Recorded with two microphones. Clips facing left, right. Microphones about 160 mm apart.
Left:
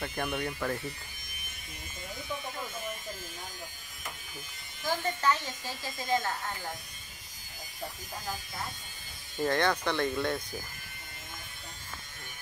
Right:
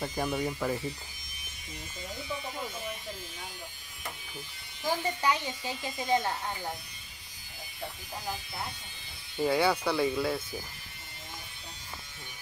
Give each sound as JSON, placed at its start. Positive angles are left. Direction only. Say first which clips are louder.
{"t": 0.0, "sound": "speech", "louder": "right 2 dB", "side_deg": -10}
{"t": 4.8, "sound": "speech", "louder": "even", "side_deg": -15}
{"t": 9.4, "sound": "speech", "louder": "right 2 dB", "side_deg": -10}